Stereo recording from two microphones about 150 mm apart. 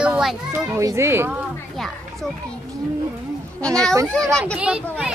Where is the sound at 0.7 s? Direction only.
20° right (ahead or behind).